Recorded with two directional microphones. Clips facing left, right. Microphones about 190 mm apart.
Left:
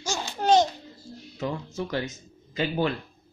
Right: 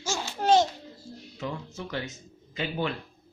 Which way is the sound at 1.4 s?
40° left (ahead or behind).